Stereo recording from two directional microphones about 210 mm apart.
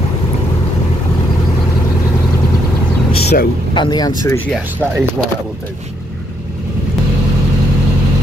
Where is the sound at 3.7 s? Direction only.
20° left (ahead or behind).